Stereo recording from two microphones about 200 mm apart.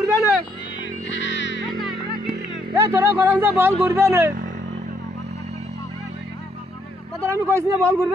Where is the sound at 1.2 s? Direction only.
65° left (ahead or behind).